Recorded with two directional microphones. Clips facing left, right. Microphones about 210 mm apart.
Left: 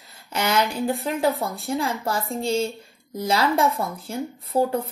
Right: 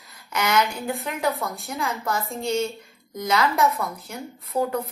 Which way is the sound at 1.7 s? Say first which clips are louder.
Left 3 dB; 30° left (ahead or behind).